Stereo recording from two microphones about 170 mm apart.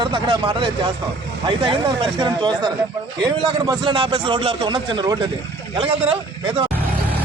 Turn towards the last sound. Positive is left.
turn(degrees=-35)  # may be behind; listen again after turning